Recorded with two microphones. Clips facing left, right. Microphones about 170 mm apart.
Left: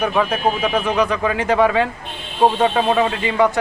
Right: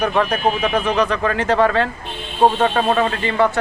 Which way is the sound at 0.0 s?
5° left (ahead or behind).